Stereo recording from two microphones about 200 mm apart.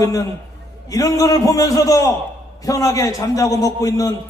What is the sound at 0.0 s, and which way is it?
A man's voice, 15° left (ahead or behind).